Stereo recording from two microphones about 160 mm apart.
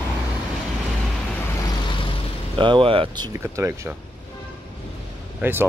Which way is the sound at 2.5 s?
30° right (ahead or behind).